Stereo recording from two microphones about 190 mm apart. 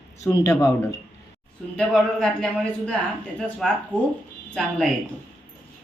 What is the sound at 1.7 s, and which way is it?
Speech, 5° left (ahead or behind).